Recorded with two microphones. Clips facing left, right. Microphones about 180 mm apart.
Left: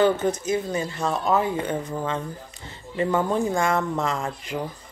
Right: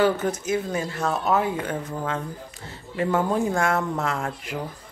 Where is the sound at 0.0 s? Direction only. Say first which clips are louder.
Left 1 dB; 5° right (ahead or behind).